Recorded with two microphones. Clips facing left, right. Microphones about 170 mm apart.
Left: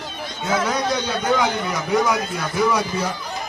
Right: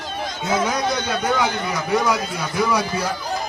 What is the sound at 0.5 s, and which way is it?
Speech, 15° right (ahead or behind).